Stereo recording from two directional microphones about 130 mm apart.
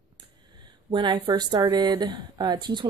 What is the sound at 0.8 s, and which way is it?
Speech, 40° right (ahead or behind).